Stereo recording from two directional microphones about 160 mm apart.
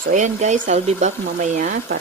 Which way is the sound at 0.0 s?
50° right (ahead or behind).